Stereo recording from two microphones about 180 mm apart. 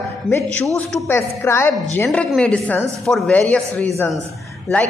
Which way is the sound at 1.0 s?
15° left (ahead or behind).